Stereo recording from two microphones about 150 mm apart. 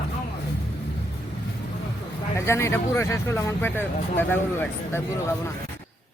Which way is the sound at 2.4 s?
15° left (ahead or behind).